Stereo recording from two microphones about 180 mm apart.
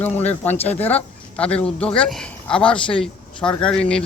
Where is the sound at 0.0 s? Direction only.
10° left (ahead or behind).